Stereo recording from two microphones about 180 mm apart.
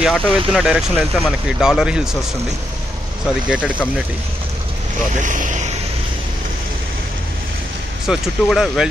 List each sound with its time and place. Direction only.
0.0 s speech: centre (ahead or behind)
3.4 s speech: 5° right (ahead or behind)
5.2 s speech: 45° right (ahead or behind)
8.1 s speech: centre (ahead or behind)